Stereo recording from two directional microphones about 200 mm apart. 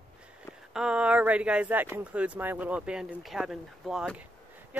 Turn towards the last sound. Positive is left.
turn(degrees=-5)  # may be behind; listen again after turning